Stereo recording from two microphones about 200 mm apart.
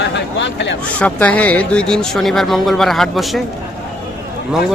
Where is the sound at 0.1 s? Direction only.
60° left (ahead or behind).